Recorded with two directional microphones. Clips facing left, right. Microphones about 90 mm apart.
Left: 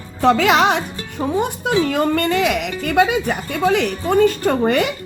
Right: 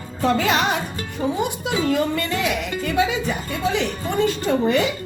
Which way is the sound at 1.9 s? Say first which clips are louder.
Left 4 dB; 55° left (ahead or behind).